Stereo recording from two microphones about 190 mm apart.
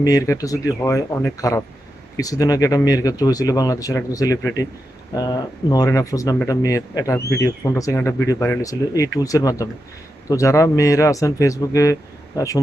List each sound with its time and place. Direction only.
0.0 s speech: 20° left (ahead or behind)